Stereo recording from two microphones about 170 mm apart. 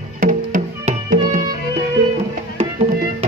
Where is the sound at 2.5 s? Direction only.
35° right (ahead or behind).